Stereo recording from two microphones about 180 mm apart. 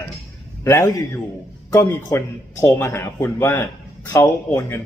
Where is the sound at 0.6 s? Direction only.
15° left (ahead or behind).